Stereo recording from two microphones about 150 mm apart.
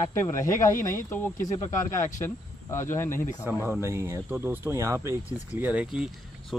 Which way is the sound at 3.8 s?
15° right (ahead or behind).